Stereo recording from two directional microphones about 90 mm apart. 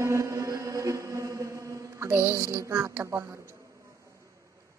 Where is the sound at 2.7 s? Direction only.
25° right (ahead or behind).